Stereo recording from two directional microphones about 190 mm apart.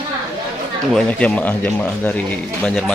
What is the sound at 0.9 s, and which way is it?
Speech, 5° left (ahead or behind).